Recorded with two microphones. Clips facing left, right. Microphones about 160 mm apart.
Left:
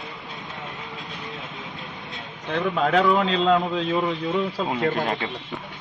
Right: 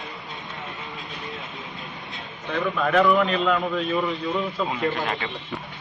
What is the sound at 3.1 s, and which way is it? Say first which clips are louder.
A man's voice: left 1 dB; 25° left (ahead or behind).